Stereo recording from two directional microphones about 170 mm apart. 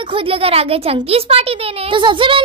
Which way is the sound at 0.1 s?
35° right (ahead or behind).